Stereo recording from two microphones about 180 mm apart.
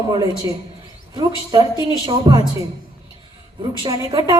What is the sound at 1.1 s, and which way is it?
Speech, 25° right (ahead or behind).